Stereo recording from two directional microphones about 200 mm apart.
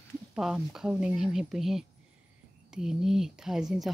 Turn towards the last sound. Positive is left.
turn(degrees=0)  # may be behind; listen again after turning